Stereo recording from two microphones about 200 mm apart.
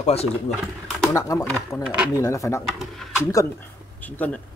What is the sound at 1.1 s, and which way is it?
Speech, 15° left (ahead or behind).